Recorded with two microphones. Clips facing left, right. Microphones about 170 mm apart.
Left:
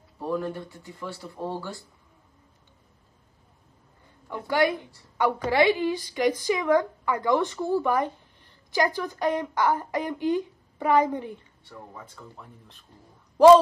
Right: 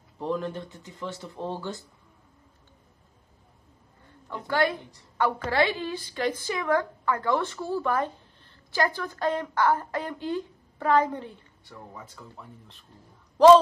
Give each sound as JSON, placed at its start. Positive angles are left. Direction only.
{"t": 0.2, "sound": "speech", "side_deg": -20}
{"t": 4.5, "sound": "speech", "side_deg": 15}
{"t": 11.9, "sound": "speech", "side_deg": 0}